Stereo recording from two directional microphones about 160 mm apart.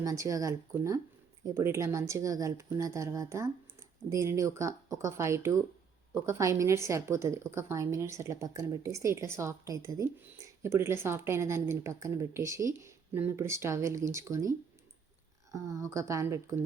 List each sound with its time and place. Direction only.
0.0 s a woman's voice: 20° right (ahead or behind)
15.5 s speech: 20° right (ahead or behind)